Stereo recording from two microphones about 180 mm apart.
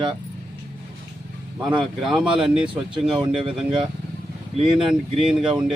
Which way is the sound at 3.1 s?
30° right (ahead or behind).